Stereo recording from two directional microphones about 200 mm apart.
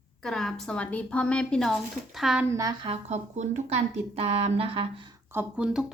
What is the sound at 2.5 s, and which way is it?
Speech, 15° right (ahead or behind).